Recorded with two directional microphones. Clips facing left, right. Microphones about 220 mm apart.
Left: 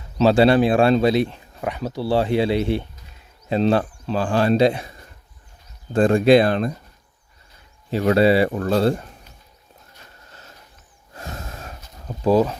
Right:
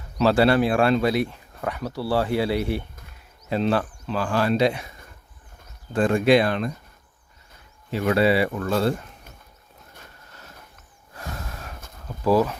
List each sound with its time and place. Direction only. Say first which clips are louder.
0.2 s speech: left 3 dB; 20° left (ahead or behind)
5.9 s speech: left 4 dB; 35° left (ahead or behind)
7.9 s speech: left 4 dB; 30° left (ahead or behind)
11.1 s snort: left 1 dB; 25° left (ahead or behind)
12.0 s speech: left 3 dB; 25° left (ahead or behind)